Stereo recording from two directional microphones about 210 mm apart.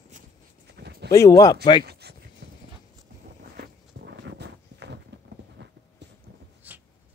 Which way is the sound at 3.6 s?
50° right (ahead or behind).